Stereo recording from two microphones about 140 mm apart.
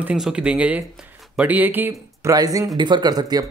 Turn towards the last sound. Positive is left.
turn(degrees=-30)  # may be behind; listen again after turning